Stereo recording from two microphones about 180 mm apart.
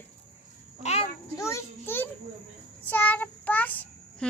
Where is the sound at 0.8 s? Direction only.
35° left (ahead or behind).